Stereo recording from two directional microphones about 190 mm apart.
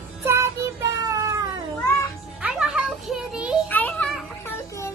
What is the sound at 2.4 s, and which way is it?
Music, 5° right (ahead or behind).